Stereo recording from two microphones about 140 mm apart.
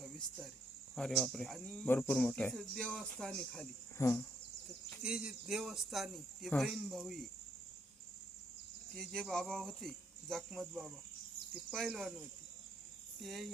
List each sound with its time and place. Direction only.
0.0 s cricket: 5° right (ahead or behind)
0.9 s speech: centre (ahead or behind)
3.9 s insect: 20° left (ahead or behind)
5.0 s speech: 5° right (ahead or behind)
9.0 s speech: 5° left (ahead or behind)
13.2 s speech: centre (ahead or behind)